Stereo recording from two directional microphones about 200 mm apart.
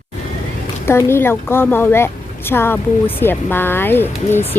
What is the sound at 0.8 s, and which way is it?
A woman's voice, 10° left (ahead or behind).